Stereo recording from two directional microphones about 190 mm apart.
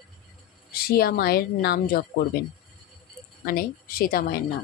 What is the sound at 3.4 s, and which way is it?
A woman's voice, 50° left (ahead or behind).